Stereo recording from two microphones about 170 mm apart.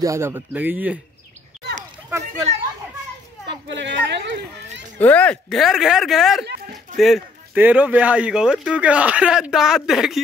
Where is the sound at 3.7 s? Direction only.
90° right.